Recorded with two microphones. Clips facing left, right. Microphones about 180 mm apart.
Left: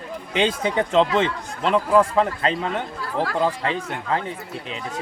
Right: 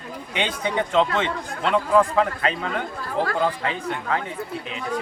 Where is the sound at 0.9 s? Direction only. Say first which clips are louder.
Left 3 dB; 35° left (ahead or behind).